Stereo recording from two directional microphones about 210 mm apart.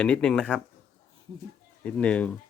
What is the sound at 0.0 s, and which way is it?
Speech, 5° left (ahead or behind).